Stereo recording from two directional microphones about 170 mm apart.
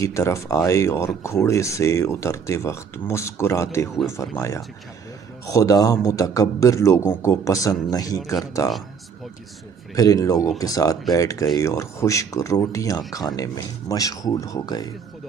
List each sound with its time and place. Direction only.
0.0 s speech: 20° left (ahead or behind)
9.9 s speech: 20° left (ahead or behind)